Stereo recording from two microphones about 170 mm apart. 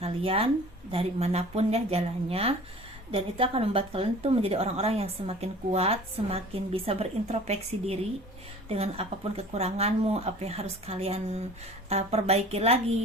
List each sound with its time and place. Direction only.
0.0 s a woman's voice: 35° right (ahead or behind)